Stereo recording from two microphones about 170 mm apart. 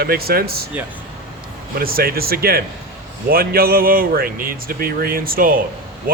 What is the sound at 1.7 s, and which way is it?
Speech, 60° right (ahead or behind).